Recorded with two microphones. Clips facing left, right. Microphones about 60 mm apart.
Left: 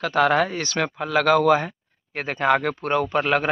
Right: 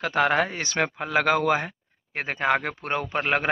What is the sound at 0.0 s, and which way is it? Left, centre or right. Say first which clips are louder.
Speech: left 3 dB; centre.